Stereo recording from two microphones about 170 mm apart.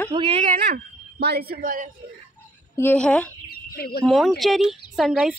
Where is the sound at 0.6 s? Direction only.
75° right (ahead or behind); by 1.9 s 55° right (ahead or behind).